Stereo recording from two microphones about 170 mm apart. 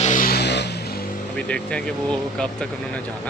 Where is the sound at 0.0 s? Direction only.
50° left (ahead or behind); by 0.7 s 80° left.